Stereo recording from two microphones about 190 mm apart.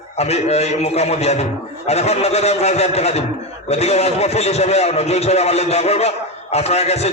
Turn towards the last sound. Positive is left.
turn(degrees=35)  # may be behind; listen again after turning